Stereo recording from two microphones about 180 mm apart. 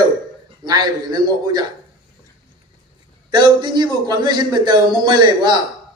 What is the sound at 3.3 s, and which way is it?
A man's voice, 25° right (ahead or behind).